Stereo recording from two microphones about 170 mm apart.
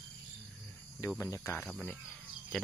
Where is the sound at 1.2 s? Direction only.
15° left (ahead or behind).